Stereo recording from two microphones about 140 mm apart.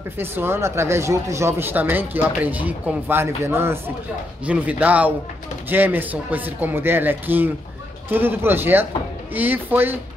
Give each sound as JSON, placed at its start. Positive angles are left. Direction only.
{"t": 0.2, "sound": "speech", "side_deg": -15}